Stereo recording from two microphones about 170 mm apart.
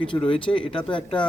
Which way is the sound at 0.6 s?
5° left (ahead or behind).